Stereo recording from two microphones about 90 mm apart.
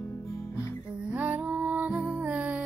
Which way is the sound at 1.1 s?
15° right (ahead or behind).